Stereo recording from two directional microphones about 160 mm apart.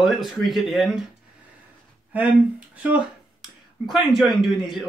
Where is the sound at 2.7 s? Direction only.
10° right (ahead or behind).